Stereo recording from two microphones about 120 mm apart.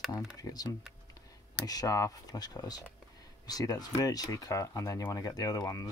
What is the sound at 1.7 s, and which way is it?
Speech, 30° left (ahead or behind).